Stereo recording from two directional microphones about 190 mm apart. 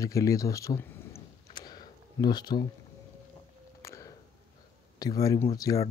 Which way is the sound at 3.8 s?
15° left (ahead or behind).